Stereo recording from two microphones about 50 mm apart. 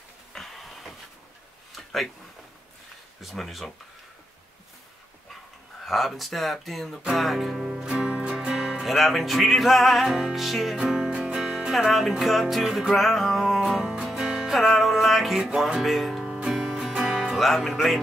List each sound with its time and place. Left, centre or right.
0.3 s a sound: centre
3.2 s music: centre
5.9 s music: centre
7.7 s music: centre
8.3 s music: centre
10.8 s music: centre
11.7 s music: centre
17.4 s music: centre